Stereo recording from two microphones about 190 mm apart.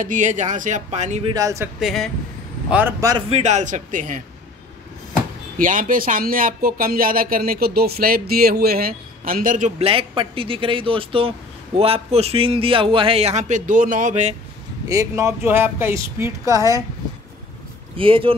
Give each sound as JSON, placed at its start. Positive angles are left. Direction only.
{"t": 0.0, "sound": "speech", "side_deg": -40}
{"t": 1.3, "sound": "speech", "side_deg": -15}
{"t": 1.8, "sound": "speech", "side_deg": 0}
{"t": 2.7, "sound": "speech", "side_deg": -15}
{"t": 3.3, "sound": "speech", "side_deg": -35}
{"t": 5.6, "sound": "speech", "side_deg": -45}
{"t": 14.9, "sound": "speech", "side_deg": -15}
{"t": 17.9, "sound": "speech", "side_deg": -30}